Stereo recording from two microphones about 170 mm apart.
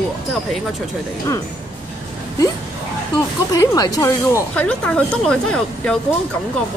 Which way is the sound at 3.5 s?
20° left (ahead or behind).